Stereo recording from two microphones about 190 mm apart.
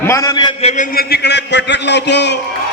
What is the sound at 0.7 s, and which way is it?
A man's voice, 45° left (ahead or behind).